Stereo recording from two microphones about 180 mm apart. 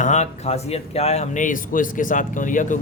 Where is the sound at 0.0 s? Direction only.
40° left (ahead or behind).